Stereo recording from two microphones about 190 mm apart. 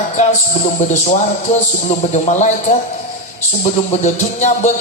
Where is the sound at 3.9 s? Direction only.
35° left (ahead or behind).